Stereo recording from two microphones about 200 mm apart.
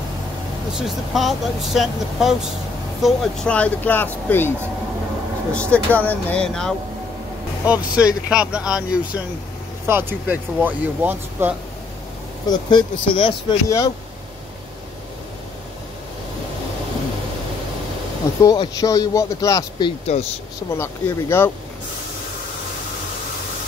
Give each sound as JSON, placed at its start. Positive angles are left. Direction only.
{"t": 0.7, "sound": "speech", "side_deg": 0}
{"t": 12.4, "sound": "speech", "side_deg": 25}
{"t": 18.4, "sound": "speech", "side_deg": 15}
{"t": 20.1, "sound": "speech", "side_deg": 30}
{"t": 20.7, "sound": "speech", "side_deg": 10}